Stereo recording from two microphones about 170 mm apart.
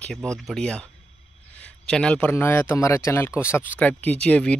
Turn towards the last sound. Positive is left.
turn(degrees=5)  # may be behind; listen again after turning